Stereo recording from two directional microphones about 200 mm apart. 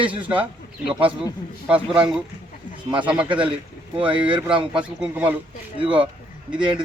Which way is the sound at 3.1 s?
5° right (ahead or behind).